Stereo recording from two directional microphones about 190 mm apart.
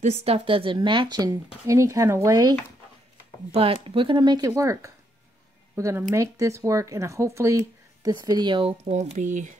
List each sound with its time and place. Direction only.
0.0 s speech: 35° right (ahead or behind); by 2.5 s 15° right (ahead or behind)
3.5 s speech: 30° right (ahead or behind)